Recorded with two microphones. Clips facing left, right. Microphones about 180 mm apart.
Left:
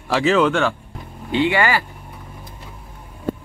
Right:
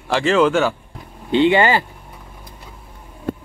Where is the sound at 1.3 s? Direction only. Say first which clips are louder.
Right 4 dB; 25° right (ahead or behind).